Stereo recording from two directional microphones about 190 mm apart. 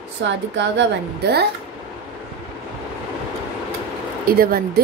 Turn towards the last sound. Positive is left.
turn(degrees=-50)  # may be behind; listen again after turning